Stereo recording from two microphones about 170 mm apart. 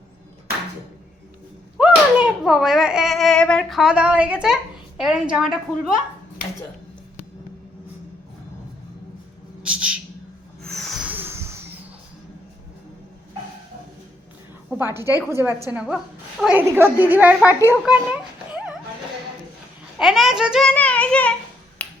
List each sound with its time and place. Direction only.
1.8 s a child's voice: 5° right (ahead or behind)
9.6 s a sound: 5° right (ahead or behind)
14.7 s a sound: 10° right (ahead or behind)
15.3 s a woman's voice: 15° right (ahead or behind)
20.0 s a child's voice: centre (ahead or behind)
21.8 s finger snapping: 5° left (ahead or behind)